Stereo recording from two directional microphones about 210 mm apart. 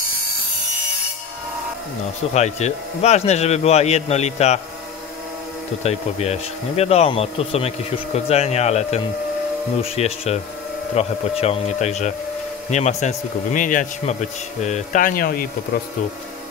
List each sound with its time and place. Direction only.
2.3 s speech: 30° left (ahead or behind)
5.9 s speech: 30° left (ahead or behind)